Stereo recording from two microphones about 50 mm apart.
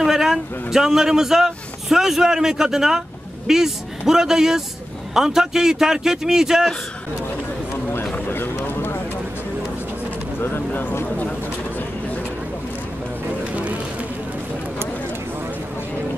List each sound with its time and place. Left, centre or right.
0.0 s speech: centre
8.6 s a sound: left
10.4 s speech: left